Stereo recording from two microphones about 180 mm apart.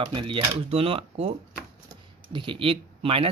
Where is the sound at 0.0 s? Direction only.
30° right (ahead or behind).